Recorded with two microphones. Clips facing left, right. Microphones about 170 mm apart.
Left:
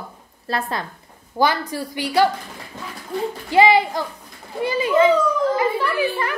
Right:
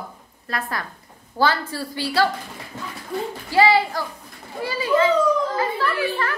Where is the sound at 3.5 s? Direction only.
20° left (ahead or behind).